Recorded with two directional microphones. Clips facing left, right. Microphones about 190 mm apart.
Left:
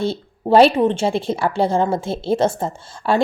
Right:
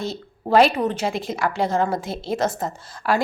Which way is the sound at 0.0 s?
30° left (ahead or behind).